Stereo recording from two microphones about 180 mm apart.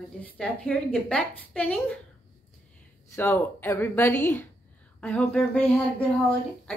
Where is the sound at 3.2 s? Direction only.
10° left (ahead or behind).